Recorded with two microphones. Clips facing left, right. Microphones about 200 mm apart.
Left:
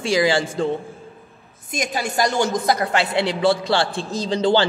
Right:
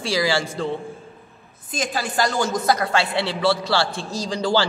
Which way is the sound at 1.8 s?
20° left (ahead or behind).